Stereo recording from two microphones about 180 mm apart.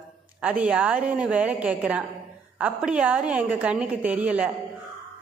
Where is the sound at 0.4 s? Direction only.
5° right (ahead or behind).